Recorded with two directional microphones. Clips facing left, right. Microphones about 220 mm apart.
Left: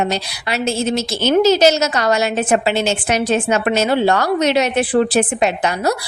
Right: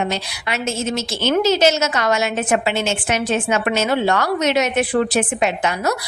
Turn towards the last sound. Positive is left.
turn(degrees=35)  # may be behind; listen again after turning